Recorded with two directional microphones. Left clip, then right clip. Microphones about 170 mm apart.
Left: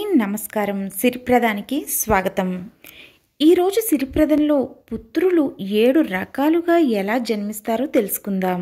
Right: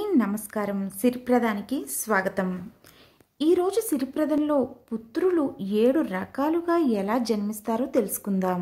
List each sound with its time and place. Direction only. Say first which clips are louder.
0.0 s a woman's voice: left 5 dB; 15° left (ahead or behind)